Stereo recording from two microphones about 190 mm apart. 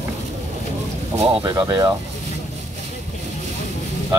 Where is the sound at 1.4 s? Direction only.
20° right (ahead or behind).